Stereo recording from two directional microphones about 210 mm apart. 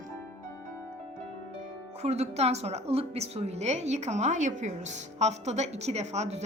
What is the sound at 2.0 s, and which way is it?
A woman's voice, 30° right (ahead or behind).